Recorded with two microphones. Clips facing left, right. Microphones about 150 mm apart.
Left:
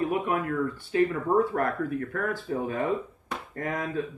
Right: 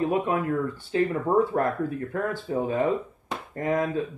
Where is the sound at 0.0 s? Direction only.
25° right (ahead or behind).